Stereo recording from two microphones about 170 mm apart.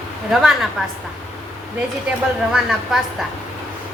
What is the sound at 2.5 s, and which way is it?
Speech, 5° right (ahead or behind).